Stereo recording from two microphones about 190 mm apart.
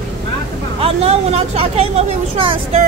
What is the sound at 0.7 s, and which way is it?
Speech, 30° right (ahead or behind).